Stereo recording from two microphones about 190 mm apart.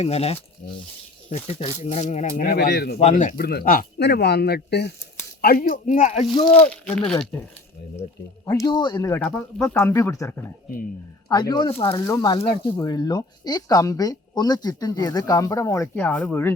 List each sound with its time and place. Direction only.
0.0 s speech: 30° left (ahead or behind); by 3.0 s 55° left (ahead or behind)
3.0 s speech: 40° left (ahead or behind)
3.3 s speech: 55° left (ahead or behind)
6.7 s speech: 5° left (ahead or behind)